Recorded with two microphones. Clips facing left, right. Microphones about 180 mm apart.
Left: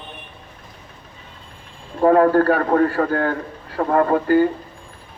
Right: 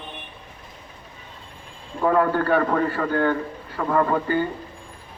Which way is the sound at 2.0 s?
45° left (ahead or behind).